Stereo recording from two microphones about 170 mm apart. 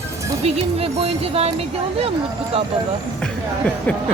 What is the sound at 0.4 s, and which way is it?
Speech, 35° right (ahead or behind).